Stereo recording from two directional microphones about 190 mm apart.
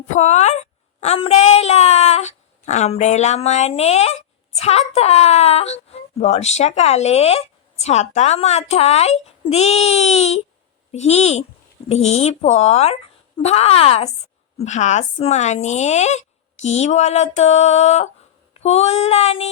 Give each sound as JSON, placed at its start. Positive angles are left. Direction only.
{"t": 0.1, "sound": "a woman's voice", "side_deg": 35}